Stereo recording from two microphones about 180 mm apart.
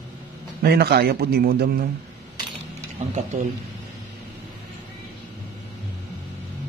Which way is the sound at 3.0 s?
40° right (ahead or behind).